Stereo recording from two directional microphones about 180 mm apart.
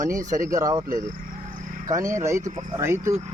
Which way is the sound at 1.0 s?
45° right (ahead or behind).